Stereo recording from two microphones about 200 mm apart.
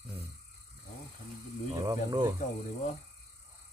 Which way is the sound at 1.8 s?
20° right (ahead or behind).